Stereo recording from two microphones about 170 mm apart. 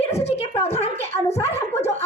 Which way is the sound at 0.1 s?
40° left (ahead or behind).